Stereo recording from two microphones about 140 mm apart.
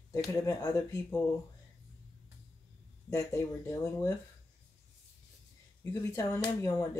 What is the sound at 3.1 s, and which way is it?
Speech, 25° left (ahead or behind).